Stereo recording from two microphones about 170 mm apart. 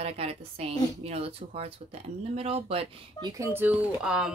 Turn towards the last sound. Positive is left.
turn(degrees=-5)  # may be behind; listen again after turning